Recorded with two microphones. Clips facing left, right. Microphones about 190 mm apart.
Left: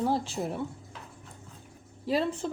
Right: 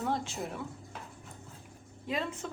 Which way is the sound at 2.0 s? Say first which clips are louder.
Left 7 dB; 35° left (ahead or behind).